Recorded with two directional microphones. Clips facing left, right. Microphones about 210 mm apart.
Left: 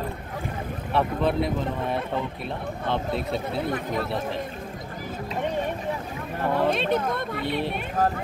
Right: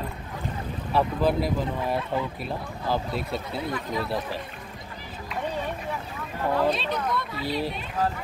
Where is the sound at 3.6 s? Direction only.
55° left (ahead or behind).